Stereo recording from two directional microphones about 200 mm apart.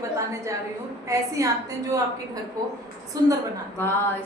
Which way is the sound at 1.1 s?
15° right (ahead or behind).